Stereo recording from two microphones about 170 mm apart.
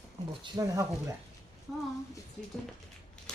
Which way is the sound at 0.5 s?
20° right (ahead or behind).